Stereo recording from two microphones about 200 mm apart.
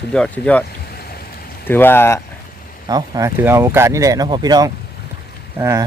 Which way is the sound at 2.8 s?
20° right (ahead or behind).